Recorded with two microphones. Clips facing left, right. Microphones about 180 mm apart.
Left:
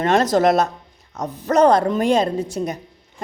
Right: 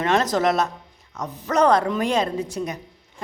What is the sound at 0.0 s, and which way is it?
A woman's voice, 35° left (ahead or behind).